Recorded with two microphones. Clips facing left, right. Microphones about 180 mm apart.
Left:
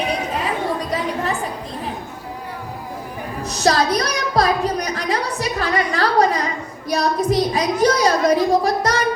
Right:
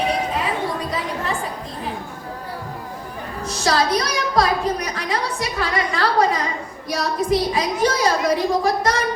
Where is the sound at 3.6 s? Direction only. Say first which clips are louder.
Left 2 dB; 35° left (ahead or behind).